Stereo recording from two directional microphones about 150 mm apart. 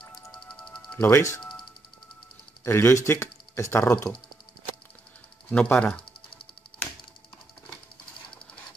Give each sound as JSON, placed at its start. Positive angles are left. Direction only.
{"t": 0.0, "sound": "music", "side_deg": 30}
{"t": 0.9, "sound": "speech", "side_deg": 15}
{"t": 2.6, "sound": "speech", "side_deg": 15}
{"t": 5.5, "sound": "speech", "side_deg": 10}